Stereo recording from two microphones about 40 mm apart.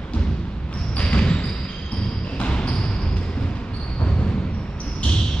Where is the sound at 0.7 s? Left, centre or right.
Left.